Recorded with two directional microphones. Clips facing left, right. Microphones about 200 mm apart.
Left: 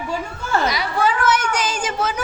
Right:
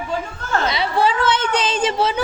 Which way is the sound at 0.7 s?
25° right (ahead or behind).